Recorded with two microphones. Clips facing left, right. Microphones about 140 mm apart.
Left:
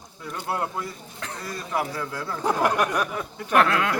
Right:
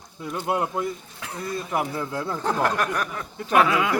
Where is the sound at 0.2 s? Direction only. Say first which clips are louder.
Right 3 dB; 20° right (ahead or behind).